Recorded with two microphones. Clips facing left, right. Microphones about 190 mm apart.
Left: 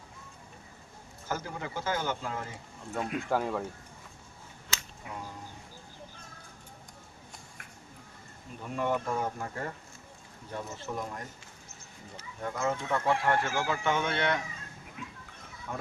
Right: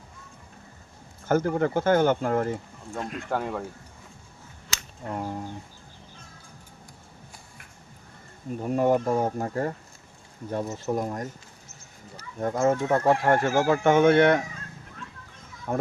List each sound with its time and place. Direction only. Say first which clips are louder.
1.3 s speech: right 13 dB; 55° right (ahead or behind)
2.9 s speech: even; 5° left (ahead or behind)
5.0 s speech: right 12 dB; 60° right (ahead or behind)
8.6 s speech: right 9 dB; 40° right (ahead or behind)
15.0 s a sound: left 1 dB; 10° left (ahead or behind)
15.7 s speech: right 11 dB; 50° right (ahead or behind)